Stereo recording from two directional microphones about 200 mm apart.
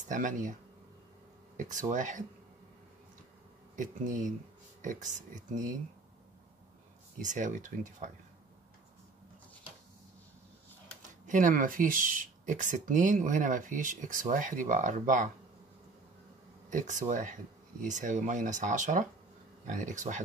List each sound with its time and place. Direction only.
0.1 s speech: 40° right (ahead or behind)
1.6 s speech: 40° right (ahead or behind)
3.7 s speech: 40° right (ahead or behind)
7.2 s speech: 40° right (ahead or behind)
11.0 s speech: 40° right (ahead or behind)
16.7 s speech: 40° right (ahead or behind)